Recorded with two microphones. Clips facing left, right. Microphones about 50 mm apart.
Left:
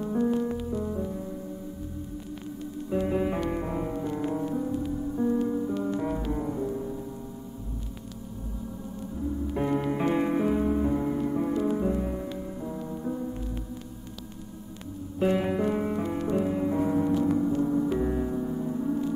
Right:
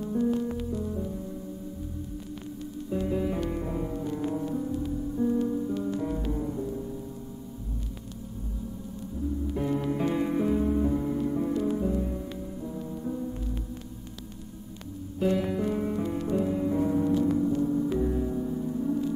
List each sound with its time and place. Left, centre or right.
0.0 s music: left
2.9 s music: left
9.5 s music: left
15.1 s music: left
17.4 s gong: left
17.9 s music: left